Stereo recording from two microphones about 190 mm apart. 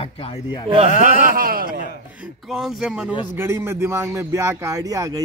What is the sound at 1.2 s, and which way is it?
Speech, 50° right (ahead or behind).